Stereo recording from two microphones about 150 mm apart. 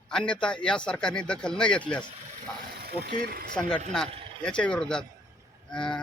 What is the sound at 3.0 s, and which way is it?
Speech, 90° right.